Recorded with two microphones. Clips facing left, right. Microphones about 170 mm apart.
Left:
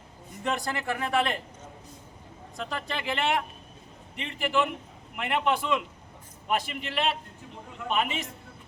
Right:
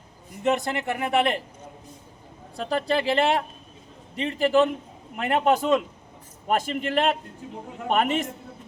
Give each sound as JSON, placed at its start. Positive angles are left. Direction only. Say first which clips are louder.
{"t": 0.4, "sound": "speech", "louder": "right 6 dB", "side_deg": -20}
{"t": 2.6, "sound": "a man's voice", "louder": "right 9 dB", "side_deg": -35}